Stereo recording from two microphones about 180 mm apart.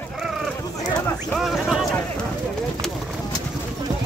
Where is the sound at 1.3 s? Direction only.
Centre (ahead or behind).